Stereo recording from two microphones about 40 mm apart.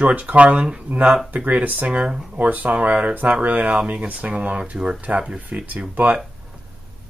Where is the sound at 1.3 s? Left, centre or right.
Right.